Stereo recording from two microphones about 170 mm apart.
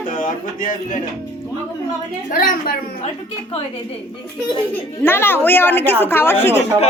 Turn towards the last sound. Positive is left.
turn(degrees=15)  # may be behind; listen again after turning